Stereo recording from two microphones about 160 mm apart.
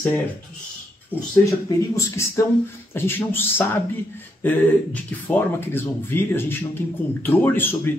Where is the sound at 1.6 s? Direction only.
20° left (ahead or behind).